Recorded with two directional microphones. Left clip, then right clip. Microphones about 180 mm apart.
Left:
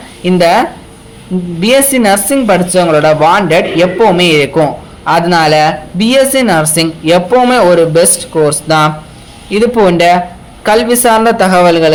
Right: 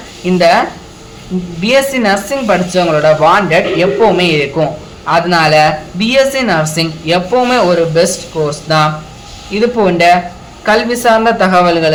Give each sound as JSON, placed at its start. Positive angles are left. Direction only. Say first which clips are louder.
{"t": 0.3, "sound": "speech", "louder": "left 1 dB", "side_deg": 35}
{"t": 1.6, "sound": "speech", "louder": "left 2 dB", "side_deg": 35}